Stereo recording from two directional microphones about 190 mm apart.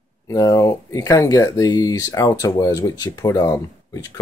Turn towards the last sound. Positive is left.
turn(degrees=20)  # may be behind; listen again after turning